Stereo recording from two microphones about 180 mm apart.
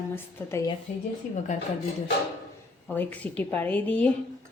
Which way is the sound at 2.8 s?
10° left (ahead or behind).